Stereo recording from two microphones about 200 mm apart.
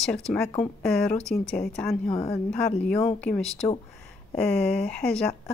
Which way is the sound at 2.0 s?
30° left (ahead or behind).